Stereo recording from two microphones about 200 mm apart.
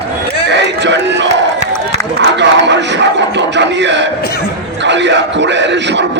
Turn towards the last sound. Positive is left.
turn(degrees=-60)  # may be behind; listen again after turning